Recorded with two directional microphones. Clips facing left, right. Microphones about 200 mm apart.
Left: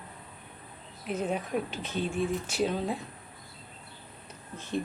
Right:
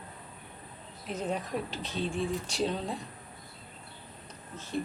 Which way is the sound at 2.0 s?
30° right (ahead or behind).